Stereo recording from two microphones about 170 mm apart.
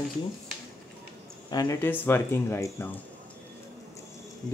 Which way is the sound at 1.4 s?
25° left (ahead or behind).